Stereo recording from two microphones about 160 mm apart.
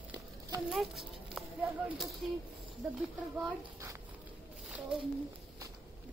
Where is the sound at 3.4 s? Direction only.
15° right (ahead or behind).